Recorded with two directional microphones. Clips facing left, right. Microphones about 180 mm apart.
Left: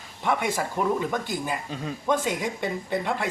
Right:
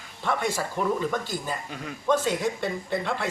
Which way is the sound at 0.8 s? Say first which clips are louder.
Even; 15° left (ahead or behind).